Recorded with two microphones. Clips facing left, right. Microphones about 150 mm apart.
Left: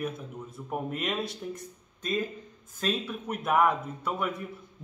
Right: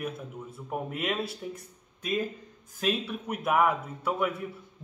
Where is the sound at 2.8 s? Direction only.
10° right (ahead or behind).